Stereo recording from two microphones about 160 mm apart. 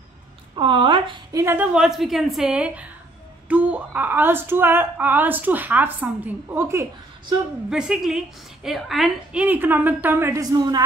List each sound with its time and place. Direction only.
0.6 s speech: 30° right (ahead or behind)
1.3 s a woman's voice: 15° right (ahead or behind)
1.7 s a woman's voice: 5° right (ahead or behind)
7.7 s a woman's voice: 5° right (ahead or behind); by 10.8 s 25° right (ahead or behind)